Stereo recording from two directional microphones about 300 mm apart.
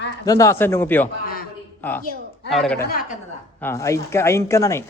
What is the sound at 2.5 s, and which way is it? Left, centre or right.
Speech, centre.